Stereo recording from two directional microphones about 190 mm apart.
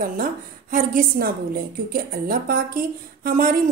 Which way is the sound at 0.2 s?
45° right (ahead or behind).